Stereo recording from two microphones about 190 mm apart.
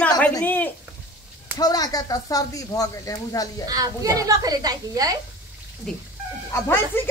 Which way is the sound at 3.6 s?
20° right (ahead or behind).